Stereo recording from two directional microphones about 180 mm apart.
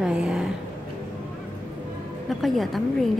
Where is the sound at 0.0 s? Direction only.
5° right (ahead or behind).